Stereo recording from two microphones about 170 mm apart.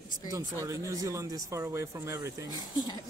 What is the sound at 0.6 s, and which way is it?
Speech, 20° right (ahead or behind).